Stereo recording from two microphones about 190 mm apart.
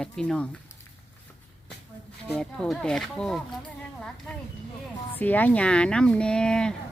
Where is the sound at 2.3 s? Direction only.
Centre (ahead or behind).